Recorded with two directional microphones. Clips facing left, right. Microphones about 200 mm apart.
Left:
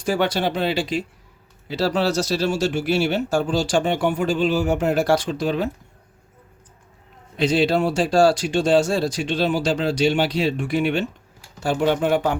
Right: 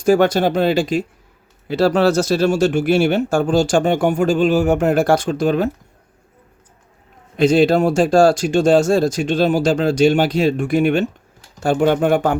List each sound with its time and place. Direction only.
0.0 s speech: 45° right (ahead or behind)
7.3 s speech: 45° right (ahead or behind)